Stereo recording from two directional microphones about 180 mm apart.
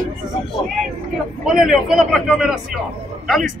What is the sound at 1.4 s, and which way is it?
Speech, 5° right (ahead or behind).